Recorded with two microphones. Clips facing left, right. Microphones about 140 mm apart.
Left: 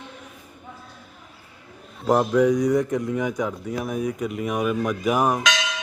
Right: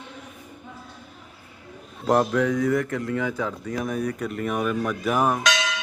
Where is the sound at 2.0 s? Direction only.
10° left (ahead or behind).